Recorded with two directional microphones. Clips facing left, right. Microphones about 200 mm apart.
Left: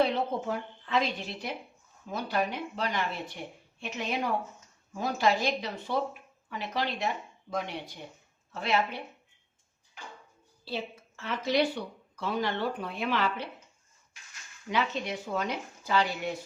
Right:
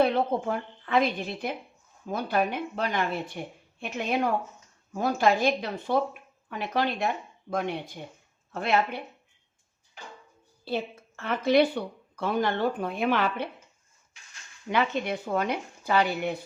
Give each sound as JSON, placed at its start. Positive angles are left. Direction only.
{"t": 0.0, "sound": "speech", "side_deg": -55}
{"t": 10.7, "sound": "speech", "side_deg": -55}
{"t": 14.7, "sound": "speech", "side_deg": -55}